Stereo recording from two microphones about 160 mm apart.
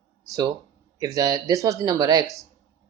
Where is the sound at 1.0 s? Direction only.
20° right (ahead or behind).